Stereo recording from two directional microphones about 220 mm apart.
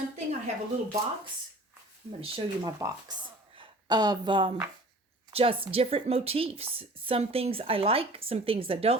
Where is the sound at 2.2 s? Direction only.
25° right (ahead or behind).